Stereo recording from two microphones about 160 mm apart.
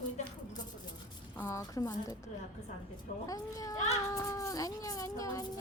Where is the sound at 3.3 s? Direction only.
20° left (ahead or behind).